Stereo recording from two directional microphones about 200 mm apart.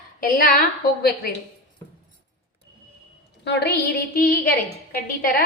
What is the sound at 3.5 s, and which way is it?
A woman's voice, 55° left (ahead or behind).